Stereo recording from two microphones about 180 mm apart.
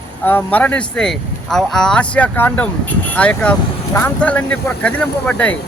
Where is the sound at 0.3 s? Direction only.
10° left (ahead or behind).